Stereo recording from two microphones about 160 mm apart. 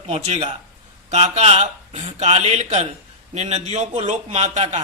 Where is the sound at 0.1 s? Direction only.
40° right (ahead or behind).